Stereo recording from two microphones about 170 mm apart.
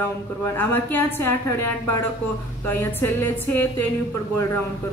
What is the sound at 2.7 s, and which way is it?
Speech, 10° left (ahead or behind).